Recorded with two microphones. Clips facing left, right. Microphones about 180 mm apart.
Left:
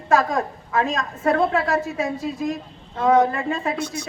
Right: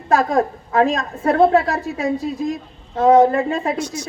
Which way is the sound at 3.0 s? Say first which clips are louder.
Right 5 dB; 30° right (ahead or behind).